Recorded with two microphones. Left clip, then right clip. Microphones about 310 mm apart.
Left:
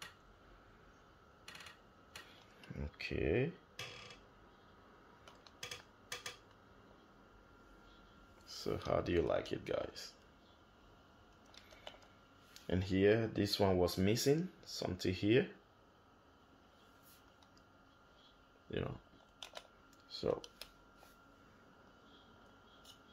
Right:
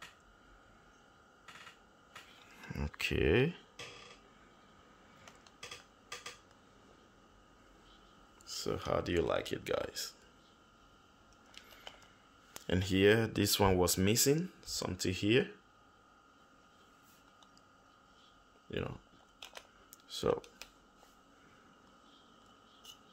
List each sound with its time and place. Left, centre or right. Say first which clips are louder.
2.6 s a sound: right 8 dB; right
8.5 s speech: right 2 dB; centre
12.6 s speech: right 4 dB; centre
18.7 s speech: right 2 dB; centre
20.1 s computer keyboard: right 5 dB; right